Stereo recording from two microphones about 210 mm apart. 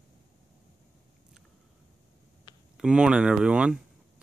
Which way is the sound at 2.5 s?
20° left (ahead or behind).